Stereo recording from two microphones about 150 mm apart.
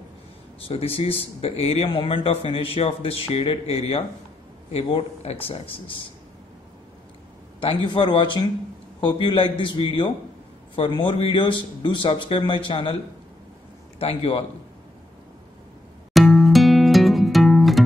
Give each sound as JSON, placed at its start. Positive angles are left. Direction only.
{"t": 0.7, "sound": "speech", "side_deg": 40}
{"t": 7.6, "sound": "speech", "side_deg": 30}
{"t": 13.9, "sound": "a man's voice", "side_deg": 40}
{"t": 16.1, "sound": "music", "side_deg": 0}